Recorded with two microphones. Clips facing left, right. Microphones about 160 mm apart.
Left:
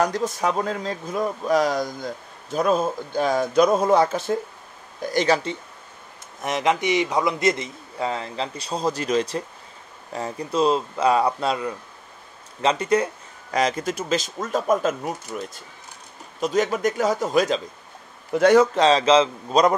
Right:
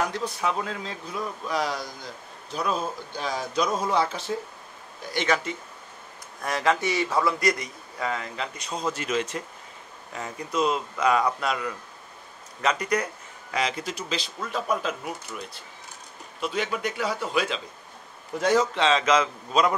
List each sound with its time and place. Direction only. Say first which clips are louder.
0.0 s a man's voice: left 5 dB; 40° left (ahead or behind)
5.1 s speech: left 5 dB; 35° left (ahead or behind)
6.4 s a man's voice: left 3 dB; 20° left (ahead or behind)
13.5 s a man's voice: left 6 dB; 45° left (ahead or behind)
18.4 s a man's voice: left 7 dB; 60° left (ahead or behind)
18.8 s speech: left 5 dB; 35° left (ahead or behind)